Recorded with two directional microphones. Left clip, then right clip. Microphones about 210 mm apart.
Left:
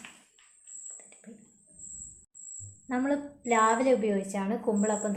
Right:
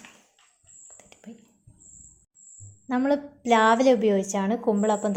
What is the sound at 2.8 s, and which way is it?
A woman's voice, 30° right (ahead or behind).